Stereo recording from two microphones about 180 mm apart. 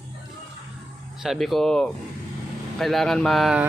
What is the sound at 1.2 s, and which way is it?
Speech, centre (ahead or behind).